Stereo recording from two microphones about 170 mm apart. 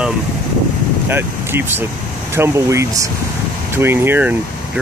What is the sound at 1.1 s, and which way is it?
Speech, 10° right (ahead or behind).